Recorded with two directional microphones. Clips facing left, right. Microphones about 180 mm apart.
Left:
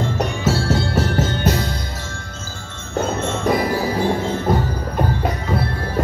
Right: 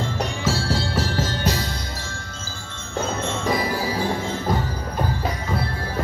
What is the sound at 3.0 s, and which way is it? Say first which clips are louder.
Music: left 4 dB; 55° left (ahead or behind).